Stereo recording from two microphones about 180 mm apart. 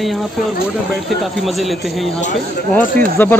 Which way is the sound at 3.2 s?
10° left (ahead or behind).